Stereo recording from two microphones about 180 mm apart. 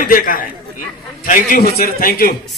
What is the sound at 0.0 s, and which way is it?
A man's voice, 50° left (ahead or behind).